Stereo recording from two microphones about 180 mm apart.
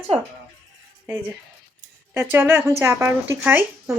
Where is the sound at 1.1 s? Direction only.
5° right (ahead or behind).